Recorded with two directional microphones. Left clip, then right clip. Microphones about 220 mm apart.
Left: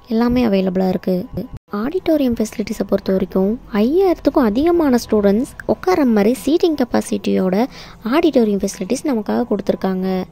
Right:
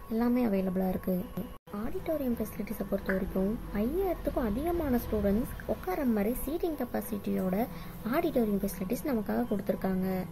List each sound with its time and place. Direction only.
0.1 s speech: 40° left (ahead or behind)